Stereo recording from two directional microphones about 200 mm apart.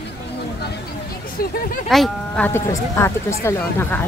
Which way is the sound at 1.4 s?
50° left (ahead or behind).